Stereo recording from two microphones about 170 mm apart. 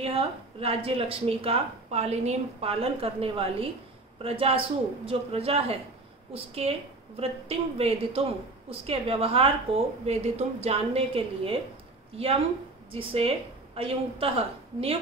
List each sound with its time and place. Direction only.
0.0 s speech: 35° right (ahead or behind)
12.9 s speech: 35° right (ahead or behind)